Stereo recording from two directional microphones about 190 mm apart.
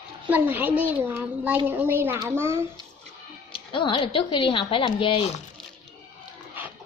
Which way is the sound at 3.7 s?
25° left (ahead or behind).